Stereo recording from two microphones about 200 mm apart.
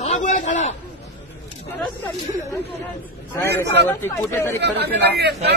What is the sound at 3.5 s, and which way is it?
Speech, 10° left (ahead or behind).